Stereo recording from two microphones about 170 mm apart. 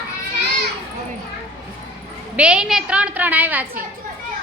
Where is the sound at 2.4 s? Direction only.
5° right (ahead or behind).